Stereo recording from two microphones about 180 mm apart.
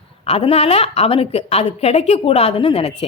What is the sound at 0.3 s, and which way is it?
Speech, 35° left (ahead or behind).